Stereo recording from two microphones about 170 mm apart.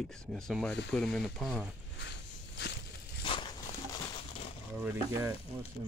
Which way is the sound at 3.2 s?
30° left (ahead or behind).